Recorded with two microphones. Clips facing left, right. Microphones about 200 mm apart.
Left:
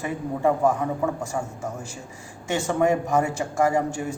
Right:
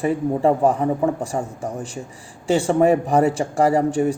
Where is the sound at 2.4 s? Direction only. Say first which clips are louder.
Right 6 dB; 35° right (ahead or behind).